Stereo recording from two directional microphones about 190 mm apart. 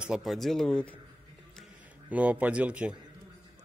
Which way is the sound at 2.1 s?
10° right (ahead or behind).